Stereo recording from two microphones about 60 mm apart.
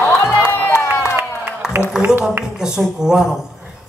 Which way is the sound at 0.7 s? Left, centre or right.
Left.